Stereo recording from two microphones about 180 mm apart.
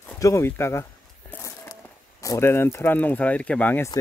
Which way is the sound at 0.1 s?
15° left (ahead or behind).